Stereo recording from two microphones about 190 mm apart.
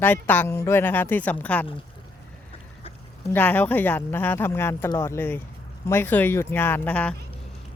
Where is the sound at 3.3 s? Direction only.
10° left (ahead or behind).